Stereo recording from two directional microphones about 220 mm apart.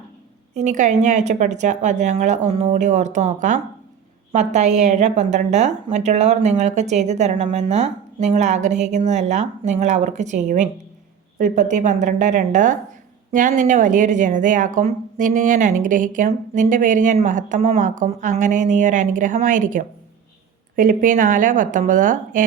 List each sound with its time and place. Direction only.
0.5 s speech: 35° right (ahead or behind)